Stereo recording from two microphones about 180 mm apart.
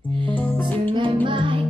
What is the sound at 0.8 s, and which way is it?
Music, 25° right (ahead or behind).